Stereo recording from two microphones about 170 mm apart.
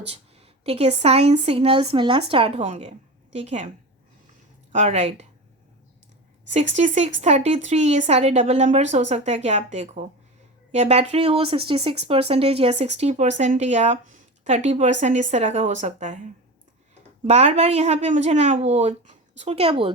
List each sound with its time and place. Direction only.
0.1 s speech: 35° right (ahead or behind)
4.7 s speech: 40° right (ahead or behind)
6.5 s speech: 40° right (ahead or behind)
17.2 s speech: 40° right (ahead or behind)